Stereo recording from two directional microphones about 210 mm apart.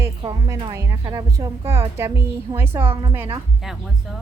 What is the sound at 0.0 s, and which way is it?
A woman's voice, 15° right (ahead or behind).